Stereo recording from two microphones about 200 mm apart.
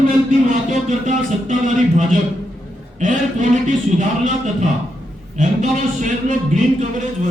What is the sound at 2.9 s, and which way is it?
A man's voice, 40° right (ahead or behind).